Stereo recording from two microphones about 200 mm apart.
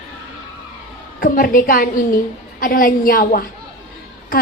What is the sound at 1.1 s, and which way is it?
A woman's voice, 45° left (ahead or behind).